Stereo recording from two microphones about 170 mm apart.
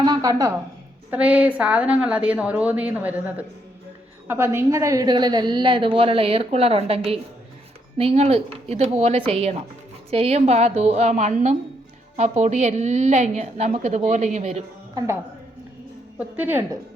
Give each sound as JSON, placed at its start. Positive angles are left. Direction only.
{"t": 0.0, "sound": "a woman's voice", "side_deg": -25}
{"t": 1.1, "sound": "a woman's voice", "side_deg": -10}
{"t": 14.9, "sound": "a woman's voice", "side_deg": -15}